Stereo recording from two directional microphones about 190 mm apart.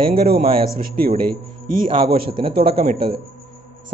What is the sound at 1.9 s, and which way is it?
Speech, 25° right (ahead or behind).